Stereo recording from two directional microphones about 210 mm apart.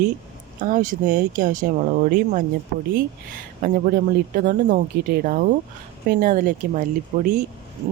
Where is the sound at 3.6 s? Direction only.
40° right (ahead or behind).